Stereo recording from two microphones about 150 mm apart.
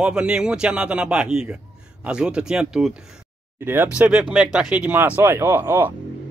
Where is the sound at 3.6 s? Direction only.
15° right (ahead or behind).